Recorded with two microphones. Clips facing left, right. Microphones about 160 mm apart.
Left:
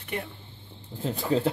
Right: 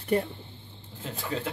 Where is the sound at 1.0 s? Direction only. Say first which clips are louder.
Left 8 dB; 30° left (ahead or behind).